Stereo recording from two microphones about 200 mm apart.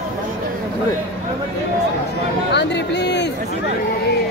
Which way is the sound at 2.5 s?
60° left (ahead or behind).